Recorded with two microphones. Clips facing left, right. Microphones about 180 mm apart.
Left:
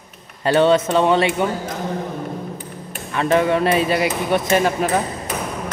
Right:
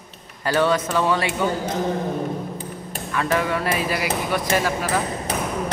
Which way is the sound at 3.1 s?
25° left (ahead or behind).